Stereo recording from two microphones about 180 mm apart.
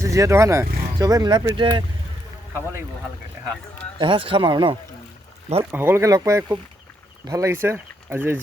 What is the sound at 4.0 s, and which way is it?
Speech, 30° right (ahead or behind).